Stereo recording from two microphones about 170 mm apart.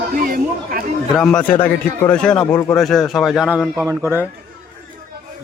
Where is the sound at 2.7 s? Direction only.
Centre (ahead or behind).